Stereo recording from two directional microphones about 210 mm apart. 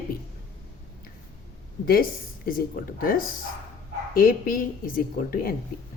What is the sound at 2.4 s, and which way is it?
Speech, 45° left (ahead or behind).